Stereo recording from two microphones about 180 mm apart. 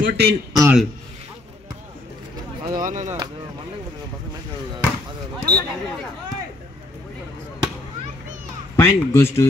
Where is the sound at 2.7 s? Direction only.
45° right (ahead or behind).